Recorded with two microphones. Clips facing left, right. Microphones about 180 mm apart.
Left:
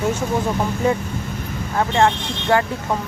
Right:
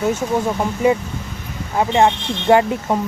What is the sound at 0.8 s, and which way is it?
Speech, 10° right (ahead or behind).